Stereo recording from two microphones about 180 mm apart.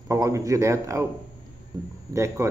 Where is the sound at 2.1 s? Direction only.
15° right (ahead or behind).